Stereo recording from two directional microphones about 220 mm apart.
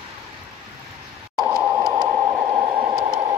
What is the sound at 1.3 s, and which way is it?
Radio, centre (ahead or behind).